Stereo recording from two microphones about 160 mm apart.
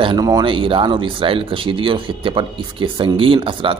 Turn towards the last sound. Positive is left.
turn(degrees=-30)  # may be behind; listen again after turning